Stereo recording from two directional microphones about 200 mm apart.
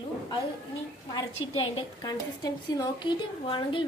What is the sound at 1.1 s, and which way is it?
A woman's voice, 25° left (ahead or behind).